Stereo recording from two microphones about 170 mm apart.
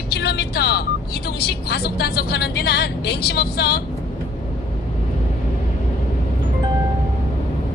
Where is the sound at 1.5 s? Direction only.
70° left (ahead or behind).